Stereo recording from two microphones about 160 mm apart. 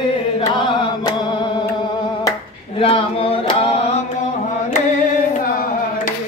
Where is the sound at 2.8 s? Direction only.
35° left (ahead or behind).